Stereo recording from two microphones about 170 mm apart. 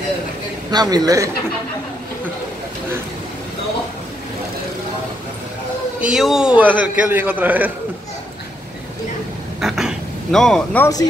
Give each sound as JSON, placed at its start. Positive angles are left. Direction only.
{"t": 0.7, "sound": "a man's voice", "side_deg": -25}
{"t": 5.9, "sound": "a man's voice", "side_deg": -5}
{"t": 9.6, "sound": "a sound", "side_deg": 0}